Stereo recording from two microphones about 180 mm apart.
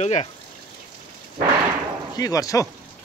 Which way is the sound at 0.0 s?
35° left (ahead or behind).